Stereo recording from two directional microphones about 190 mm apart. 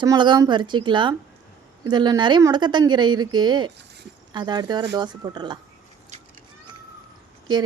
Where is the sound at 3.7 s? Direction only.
60° right (ahead or behind).